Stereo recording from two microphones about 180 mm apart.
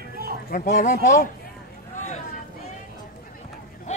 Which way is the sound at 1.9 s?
40° left (ahead or behind).